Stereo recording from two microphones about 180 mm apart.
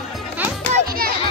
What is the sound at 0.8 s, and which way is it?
Music, 55° right (ahead or behind).